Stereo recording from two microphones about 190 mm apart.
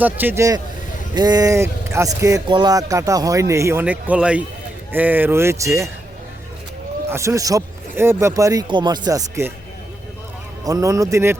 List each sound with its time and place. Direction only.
0.0 s speech: 10° right (ahead or behind)
7.1 s speech: 15° right (ahead or behind)
10.6 s speech: 20° right (ahead or behind)